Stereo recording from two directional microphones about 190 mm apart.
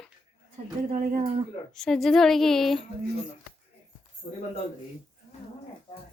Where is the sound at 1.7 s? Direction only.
Centre (ahead or behind).